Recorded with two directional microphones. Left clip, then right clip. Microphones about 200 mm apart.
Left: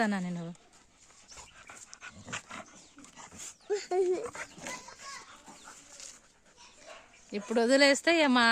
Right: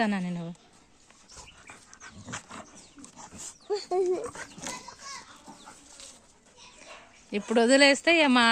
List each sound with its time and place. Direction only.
0.0 s speech: 15° left (ahead or behind)
1.9 s dog: 30° left (ahead or behind)
2.3 s wild animals: 20° left (ahead or behind)
3.3 s dog: 15° left (ahead or behind)
7.3 s speech: centre (ahead or behind)